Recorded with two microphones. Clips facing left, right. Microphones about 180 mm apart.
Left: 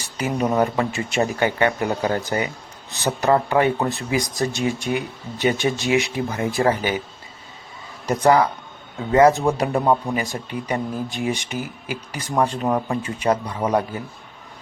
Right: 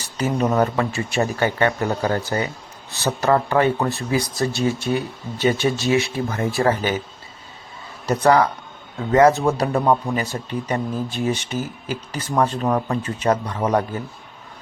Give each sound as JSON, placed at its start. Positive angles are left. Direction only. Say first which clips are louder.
{"t": 0.0, "sound": "speech", "louder": "right 2 dB", "side_deg": 15}
{"t": 8.0, "sound": "speech", "louder": "even", "side_deg": 15}